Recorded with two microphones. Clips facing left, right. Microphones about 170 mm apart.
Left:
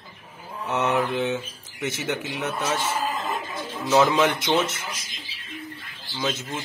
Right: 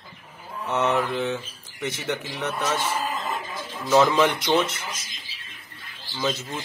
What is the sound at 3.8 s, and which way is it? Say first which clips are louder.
Speech: right 1 dB; 15° left (ahead or behind).